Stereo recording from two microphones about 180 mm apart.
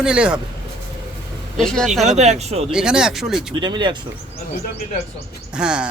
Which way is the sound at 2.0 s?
40° right (ahead or behind).